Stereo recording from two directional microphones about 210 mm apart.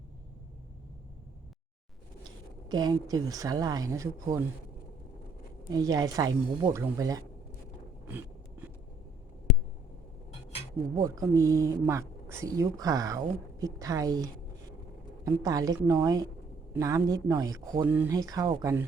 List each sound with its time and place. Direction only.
2.6 s speech: 20° right (ahead or behind)
5.7 s speech: 20° right (ahead or behind)
11.0 s speech: 15° right (ahead or behind)